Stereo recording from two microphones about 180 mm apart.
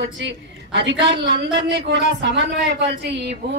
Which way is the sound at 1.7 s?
75° right (ahead or behind).